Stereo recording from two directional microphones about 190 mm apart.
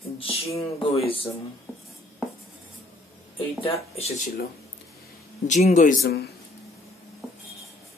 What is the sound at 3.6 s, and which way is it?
Speech, 30° left (ahead or behind).